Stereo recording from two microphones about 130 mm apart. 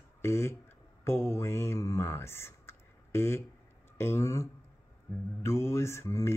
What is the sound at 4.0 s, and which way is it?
Mantra, 20° left (ahead or behind).